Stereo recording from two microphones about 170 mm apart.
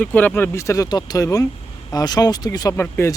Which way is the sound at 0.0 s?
10° left (ahead or behind).